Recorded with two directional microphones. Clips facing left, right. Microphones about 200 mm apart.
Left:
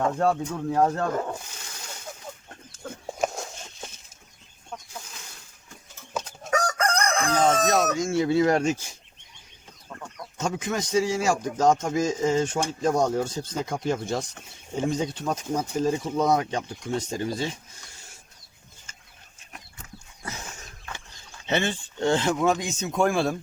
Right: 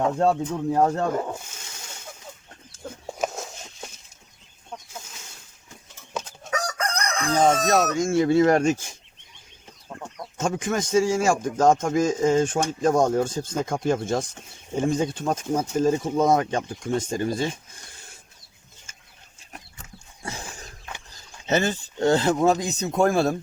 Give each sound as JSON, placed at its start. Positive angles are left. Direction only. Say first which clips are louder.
{"t": 0.2, "sound": "speech", "louder": "right 2 dB", "side_deg": -20}
{"t": 3.2, "sound": "a sound", "louder": "left 1 dB", "side_deg": 0}
{"t": 6.5, "sound": "chicken", "louder": "left 3 dB", "side_deg": 50}
{"t": 7.3, "sound": "speech", "louder": "right 3 dB", "side_deg": -50}
{"t": 10.2, "sound": "speech", "louder": "right 3 dB", "side_deg": -45}
{"t": 20.2, "sound": "a sound", "louder": "right 3 dB", "side_deg": -30}
{"t": 21.1, "sound": "speech", "louder": "right 3 dB", "side_deg": -40}